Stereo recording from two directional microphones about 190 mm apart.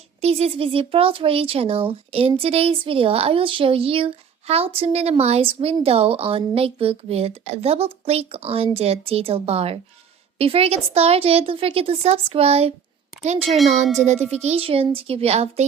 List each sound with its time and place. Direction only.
0.2 s speech: 35° right (ahead or behind)